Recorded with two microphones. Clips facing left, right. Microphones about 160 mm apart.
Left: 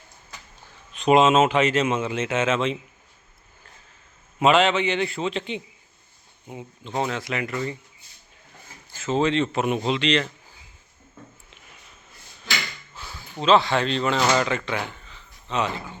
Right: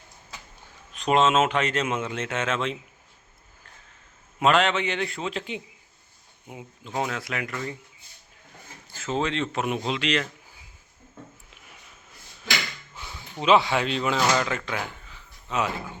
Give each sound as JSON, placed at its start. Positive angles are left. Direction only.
{"t": 0.9, "sound": "speech", "side_deg": 5}
{"t": 4.4, "sound": "speech", "side_deg": 0}
{"t": 9.0, "sound": "speech", "side_deg": 0}
{"t": 13.0, "sound": "a sound", "side_deg": -20}
{"t": 13.4, "sound": "speech", "side_deg": -10}